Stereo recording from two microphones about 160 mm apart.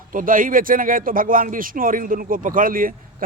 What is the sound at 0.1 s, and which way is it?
A man's voice, 60° right (ahead or behind).